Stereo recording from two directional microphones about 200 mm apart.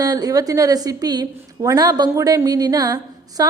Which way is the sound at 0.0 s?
20° right (ahead or behind).